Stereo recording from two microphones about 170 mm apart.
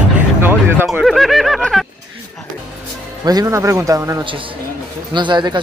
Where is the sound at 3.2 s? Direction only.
20° right (ahead or behind).